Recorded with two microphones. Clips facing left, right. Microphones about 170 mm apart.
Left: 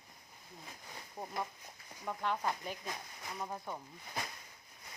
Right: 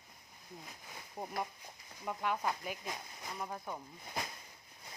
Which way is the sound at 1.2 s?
5° right (ahead or behind).